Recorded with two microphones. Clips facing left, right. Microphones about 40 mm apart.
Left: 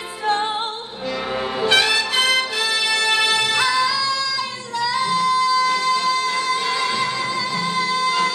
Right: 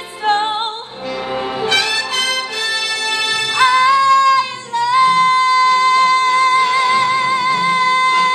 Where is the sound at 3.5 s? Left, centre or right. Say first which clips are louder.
Right 7 dB; right.